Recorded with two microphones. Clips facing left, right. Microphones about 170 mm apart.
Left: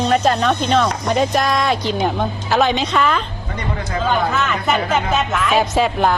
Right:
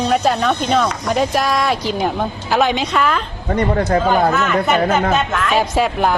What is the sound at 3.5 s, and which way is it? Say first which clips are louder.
Speech: right 10 dB; 50° right (ahead or behind).